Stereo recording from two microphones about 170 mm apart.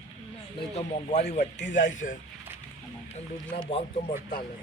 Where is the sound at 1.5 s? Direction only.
90° left.